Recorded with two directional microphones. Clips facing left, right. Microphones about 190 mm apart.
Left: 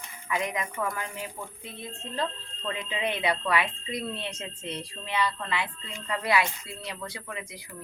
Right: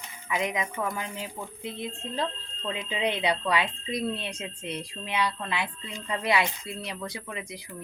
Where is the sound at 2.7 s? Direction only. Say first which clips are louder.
Right 2 dB; 20° right (ahead or behind).